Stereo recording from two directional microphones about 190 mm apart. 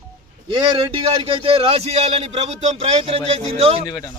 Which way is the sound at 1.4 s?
30° right (ahead or behind).